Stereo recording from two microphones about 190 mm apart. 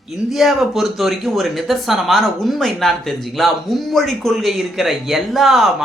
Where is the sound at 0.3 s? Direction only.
Centre (ahead or behind).